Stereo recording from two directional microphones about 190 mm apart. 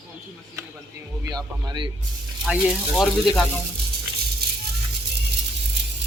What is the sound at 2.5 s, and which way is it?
Speech, 5° right (ahead or behind).